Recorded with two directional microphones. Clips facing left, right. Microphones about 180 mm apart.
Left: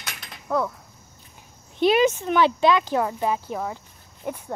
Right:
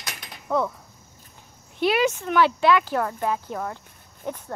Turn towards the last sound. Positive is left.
turn(degrees=5)  # may be behind; listen again after turning